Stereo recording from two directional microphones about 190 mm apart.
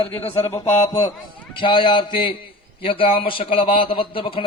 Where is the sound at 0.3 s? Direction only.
15° left (ahead or behind).